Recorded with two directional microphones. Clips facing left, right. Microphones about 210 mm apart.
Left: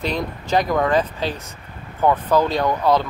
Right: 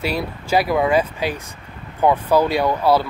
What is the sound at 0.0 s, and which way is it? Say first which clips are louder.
Speech: right 1 dB; 10° right (ahead or behind).